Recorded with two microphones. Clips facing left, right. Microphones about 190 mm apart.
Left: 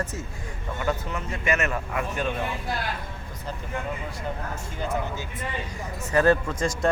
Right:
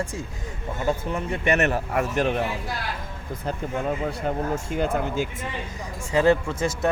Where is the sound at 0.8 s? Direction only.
30° right (ahead or behind).